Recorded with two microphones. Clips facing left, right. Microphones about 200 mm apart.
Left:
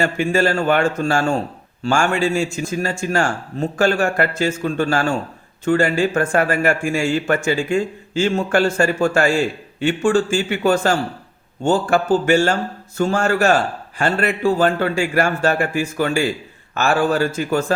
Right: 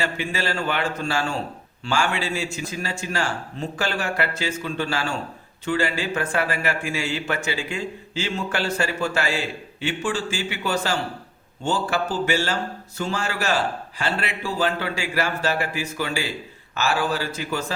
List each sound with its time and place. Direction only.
0.0 s a man's voice: 45° left (ahead or behind)